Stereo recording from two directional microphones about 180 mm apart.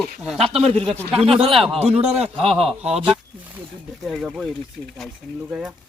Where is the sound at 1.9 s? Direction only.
35° right (ahead or behind).